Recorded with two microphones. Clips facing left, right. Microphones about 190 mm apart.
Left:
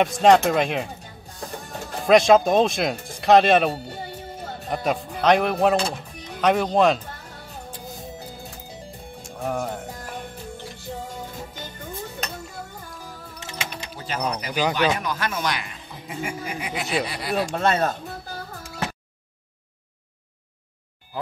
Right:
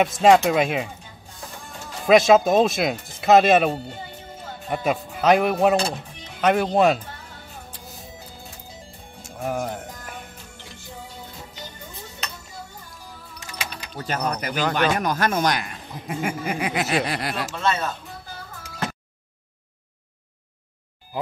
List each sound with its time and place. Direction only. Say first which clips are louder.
0.0 s speech: even; 5° right (ahead or behind)
2.0 s speech: even; centre (ahead or behind)
9.4 s speech: even; centre (ahead or behind)
11.1 s music: left 5 dB; 50° left (ahead or behind)
13.4 s music: left 1 dB; 25° left (ahead or behind)
13.9 s speech: right 2 dB; 50° right (ahead or behind); by 17.3 s 70° right (ahead or behind)
17.6 s speech: left 2 dB; 55° left (ahead or behind)